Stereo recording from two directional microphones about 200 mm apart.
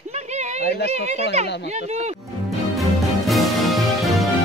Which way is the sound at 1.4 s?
55° left (ahead or behind).